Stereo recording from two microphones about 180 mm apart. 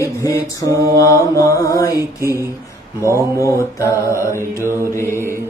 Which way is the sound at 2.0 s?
15° right (ahead or behind).